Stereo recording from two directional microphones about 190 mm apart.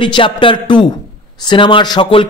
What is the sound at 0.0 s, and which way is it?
A man's voice, 25° left (ahead or behind).